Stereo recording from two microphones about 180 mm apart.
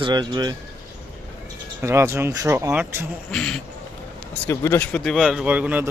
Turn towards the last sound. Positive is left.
turn(degrees=-10)  # may be behind; listen again after turning